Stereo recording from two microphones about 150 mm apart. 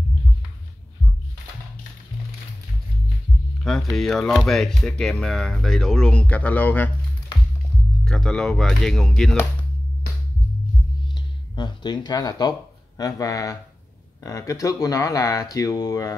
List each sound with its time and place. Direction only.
3.9 s speech: centre (ahead or behind)
8.0 s speech: 5° left (ahead or behind)
11.1 s speech: 30° left (ahead or behind)